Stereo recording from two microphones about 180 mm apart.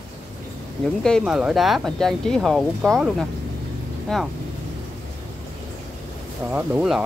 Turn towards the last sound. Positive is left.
turn(degrees=-5)  # may be behind; listen again after turning